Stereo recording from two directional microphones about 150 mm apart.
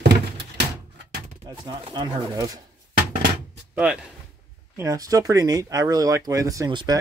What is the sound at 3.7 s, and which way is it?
Speech, 10° right (ahead or behind).